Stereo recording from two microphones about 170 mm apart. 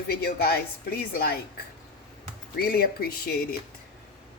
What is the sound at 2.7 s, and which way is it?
Speech, 65° left (ahead or behind).